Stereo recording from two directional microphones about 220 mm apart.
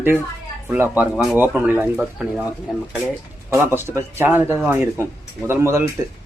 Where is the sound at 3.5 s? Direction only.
10° right (ahead or behind).